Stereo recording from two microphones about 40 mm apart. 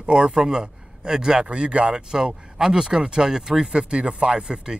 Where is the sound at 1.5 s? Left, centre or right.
Right.